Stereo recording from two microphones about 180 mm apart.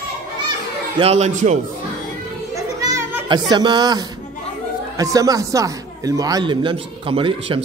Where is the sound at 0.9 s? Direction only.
35° right (ahead or behind).